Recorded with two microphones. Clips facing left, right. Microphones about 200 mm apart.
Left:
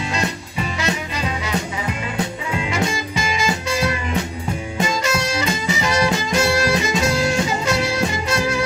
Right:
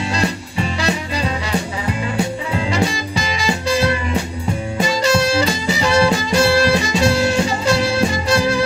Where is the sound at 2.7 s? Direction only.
35° right (ahead or behind).